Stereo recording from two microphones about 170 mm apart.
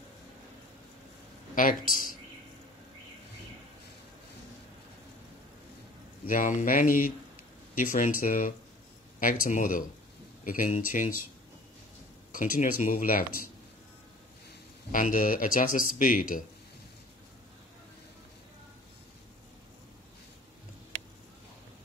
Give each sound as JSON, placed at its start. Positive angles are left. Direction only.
{"t": 1.5, "sound": "speech", "side_deg": 50}
{"t": 6.2, "sound": "speech", "side_deg": 50}
{"t": 12.3, "sound": "speech", "side_deg": 50}
{"t": 14.9, "sound": "speech", "side_deg": 50}